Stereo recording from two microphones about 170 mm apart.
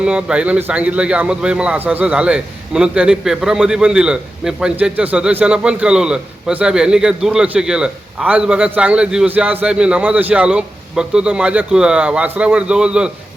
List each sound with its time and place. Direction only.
0.0 s a man's voice: 5° right (ahead or behind)